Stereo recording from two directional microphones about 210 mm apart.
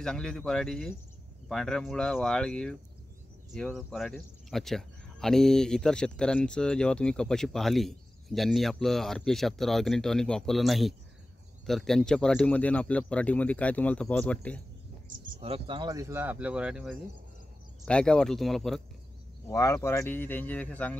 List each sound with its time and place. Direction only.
0.0 s speech: 5° left (ahead or behind)
15.1 s speech: 40° right (ahead or behind)
15.4 s speech: 25° right (ahead or behind); by 18.8 s centre (ahead or behind)
19.4 s speech: 15° left (ahead or behind)